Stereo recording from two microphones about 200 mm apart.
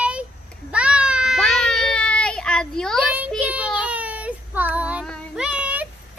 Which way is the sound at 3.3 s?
5° right (ahead or behind).